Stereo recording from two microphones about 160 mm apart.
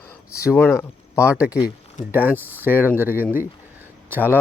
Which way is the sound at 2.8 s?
15° right (ahead or behind).